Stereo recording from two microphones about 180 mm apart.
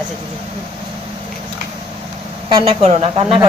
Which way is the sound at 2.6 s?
35° right (ahead or behind).